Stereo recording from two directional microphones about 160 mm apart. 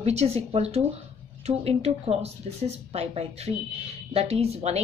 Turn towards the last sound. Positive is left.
turn(degrees=-40)  # may be behind; listen again after turning